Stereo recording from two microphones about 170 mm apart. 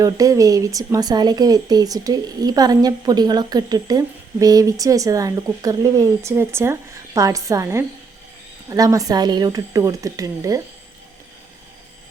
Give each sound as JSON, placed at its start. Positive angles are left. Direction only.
{"t": 0.0, "sound": "speech", "side_deg": -20}